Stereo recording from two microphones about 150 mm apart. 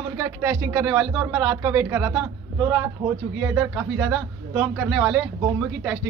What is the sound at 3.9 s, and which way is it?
A woman's voice, 5° right (ahead or behind).